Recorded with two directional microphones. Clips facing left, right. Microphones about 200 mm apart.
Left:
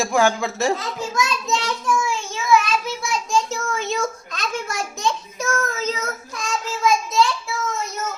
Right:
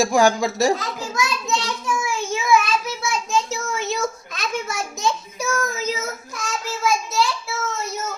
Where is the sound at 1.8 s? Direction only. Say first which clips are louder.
Left 2 dB; 10° right (ahead or behind).